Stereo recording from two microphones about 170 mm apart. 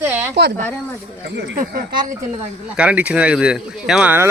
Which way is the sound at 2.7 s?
10° right (ahead or behind).